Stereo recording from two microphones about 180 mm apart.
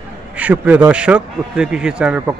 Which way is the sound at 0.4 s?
10° right (ahead or behind).